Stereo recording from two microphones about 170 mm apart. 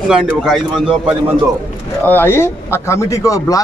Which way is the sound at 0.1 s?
5° right (ahead or behind).